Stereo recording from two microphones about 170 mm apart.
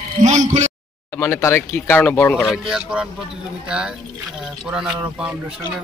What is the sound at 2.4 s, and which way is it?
A man's voice, 5° right (ahead or behind).